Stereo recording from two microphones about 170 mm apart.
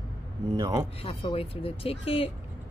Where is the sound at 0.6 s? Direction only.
20° right (ahead or behind).